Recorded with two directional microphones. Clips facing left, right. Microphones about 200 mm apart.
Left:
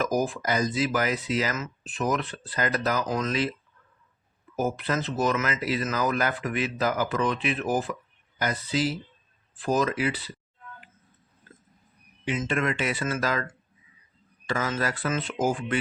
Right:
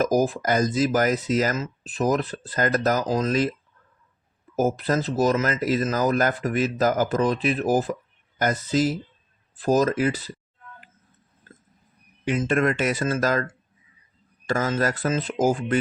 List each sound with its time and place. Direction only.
0.0 s speech: 40° right (ahead or behind)
1.5 s speech: 35° right (ahead or behind)
3.1 s speech: 30° right (ahead or behind)
4.5 s speech: 40° right (ahead or behind)
12.2 s speech: 50° right (ahead or behind)